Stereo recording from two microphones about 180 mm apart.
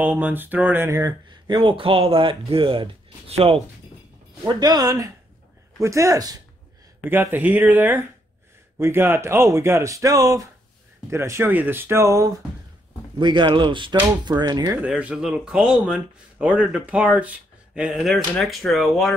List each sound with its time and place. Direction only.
0.0 s speech: 10° right (ahead or behind); by 3.6 s 35° right (ahead or behind)
4.4 s speech: 20° right (ahead or behind)
14.8 s speech: 5° right (ahead or behind)